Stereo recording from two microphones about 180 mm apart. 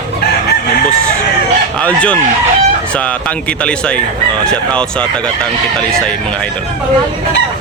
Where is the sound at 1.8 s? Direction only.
5° left (ahead or behind).